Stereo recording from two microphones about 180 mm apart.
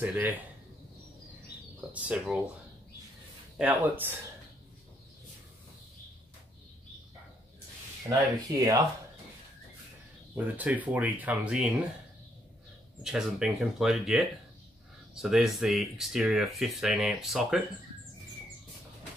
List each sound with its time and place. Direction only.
0.0 s speech: 10° right (ahead or behind)
1.9 s speech: 5° right (ahead or behind)
3.5 s speech: 10° right (ahead or behind)
8.5 s speech: 20° right (ahead or behind)
10.3 s speech: 10° right (ahead or behind)
13.0 s speech: 5° right (ahead or behind)